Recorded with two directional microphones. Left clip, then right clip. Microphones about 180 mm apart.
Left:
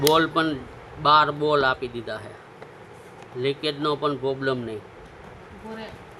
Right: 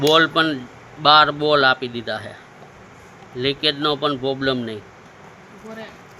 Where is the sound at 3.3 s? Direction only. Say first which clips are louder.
Right 5 dB; 15° right (ahead or behind).